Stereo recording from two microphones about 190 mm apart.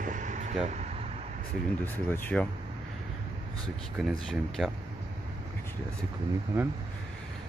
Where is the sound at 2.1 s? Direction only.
10° left (ahead or behind).